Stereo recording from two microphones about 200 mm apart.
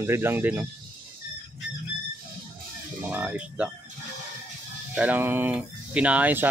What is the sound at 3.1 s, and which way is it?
Speech, 10° right (ahead or behind).